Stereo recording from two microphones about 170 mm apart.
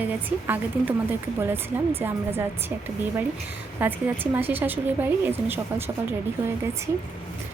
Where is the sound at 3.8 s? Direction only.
10° right (ahead or behind).